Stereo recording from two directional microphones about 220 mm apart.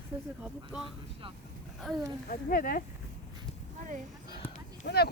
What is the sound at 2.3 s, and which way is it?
Speech, 40° left (ahead or behind).